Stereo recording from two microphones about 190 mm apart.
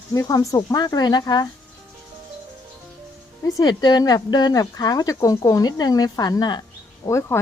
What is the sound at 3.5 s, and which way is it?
Speech, 20° left (ahead or behind).